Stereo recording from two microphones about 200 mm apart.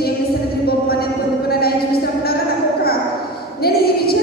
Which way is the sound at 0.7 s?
50° left (ahead or behind).